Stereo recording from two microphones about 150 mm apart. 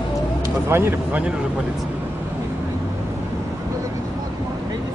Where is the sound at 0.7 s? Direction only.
15° right (ahead or behind).